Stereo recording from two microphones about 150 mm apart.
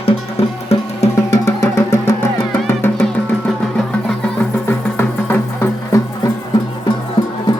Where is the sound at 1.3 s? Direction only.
20° left (ahead or behind).